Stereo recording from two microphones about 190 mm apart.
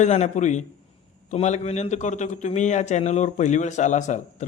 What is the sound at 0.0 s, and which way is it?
A man's voice, 35° left (ahead or behind).